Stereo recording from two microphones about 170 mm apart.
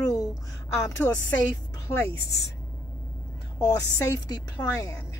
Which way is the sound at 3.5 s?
20° left (ahead or behind).